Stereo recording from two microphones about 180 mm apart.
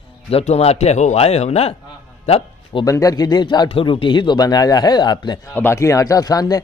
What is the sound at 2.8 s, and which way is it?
A man's voice, 20° left (ahead or behind).